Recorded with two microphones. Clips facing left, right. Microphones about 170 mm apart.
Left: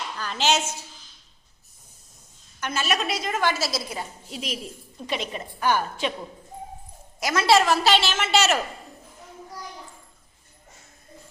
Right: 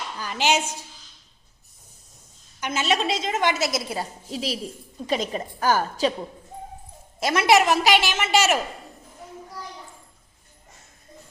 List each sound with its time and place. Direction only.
0.2 s a woman's voice: 15° right (ahead or behind)
2.6 s a woman's voice: 20° right (ahead or behind)
3.9 s a woman's voice: 35° right (ahead or behind)
7.2 s a woman's voice: 25° right (ahead or behind)